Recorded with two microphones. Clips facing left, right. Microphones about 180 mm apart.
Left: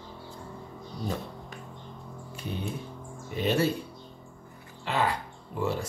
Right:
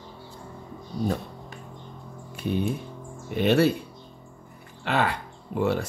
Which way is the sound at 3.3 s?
65° right (ahead or behind).